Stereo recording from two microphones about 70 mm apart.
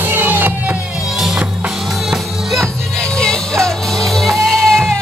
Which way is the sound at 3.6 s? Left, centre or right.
Centre.